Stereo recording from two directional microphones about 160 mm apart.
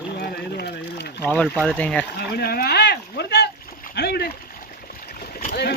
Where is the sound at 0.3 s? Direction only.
75° left (ahead or behind).